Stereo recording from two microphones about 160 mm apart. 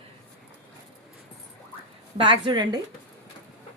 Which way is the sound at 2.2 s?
30° right (ahead or behind).